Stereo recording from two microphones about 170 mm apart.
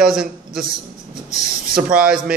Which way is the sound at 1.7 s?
5° right (ahead or behind).